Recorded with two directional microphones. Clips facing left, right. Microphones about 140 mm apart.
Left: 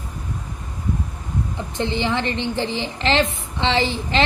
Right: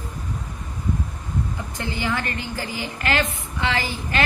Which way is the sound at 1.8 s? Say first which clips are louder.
Left 5 dB; 25° left (ahead or behind).